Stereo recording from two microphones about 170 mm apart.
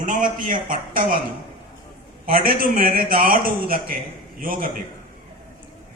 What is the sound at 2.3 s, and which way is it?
A man's voice, 55° right (ahead or behind).